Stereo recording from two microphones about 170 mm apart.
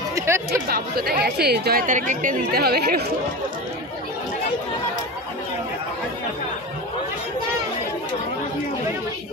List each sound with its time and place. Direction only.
0.3 s chatter: 15° right (ahead or behind)
0.7 s speech: 65° right (ahead or behind)